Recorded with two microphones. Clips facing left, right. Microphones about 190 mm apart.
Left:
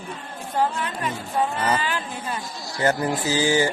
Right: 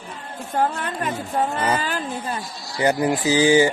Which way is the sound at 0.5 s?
50° right (ahead or behind).